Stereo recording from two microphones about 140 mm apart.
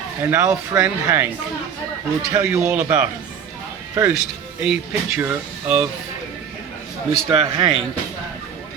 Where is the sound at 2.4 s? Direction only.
10° right (ahead or behind).